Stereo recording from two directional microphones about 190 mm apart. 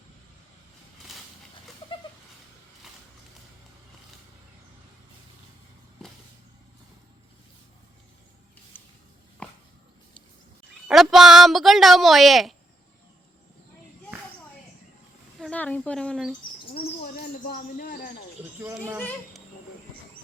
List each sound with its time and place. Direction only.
8.7 s a sound: 10° left (ahead or behind)
10.8 s speech: centre (ahead or behind)
15.4 s speech: 5° left (ahead or behind)
17.2 s speech: 50° left (ahead or behind)
18.6 s speech: 15° right (ahead or behind)